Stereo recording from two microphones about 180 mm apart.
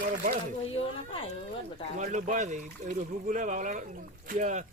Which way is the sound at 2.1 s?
45° right (ahead or behind).